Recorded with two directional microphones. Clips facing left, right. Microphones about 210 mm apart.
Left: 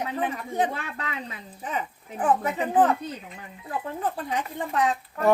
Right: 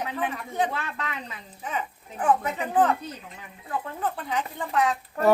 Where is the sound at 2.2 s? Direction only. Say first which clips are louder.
Left 1 dB; 35° left (ahead or behind).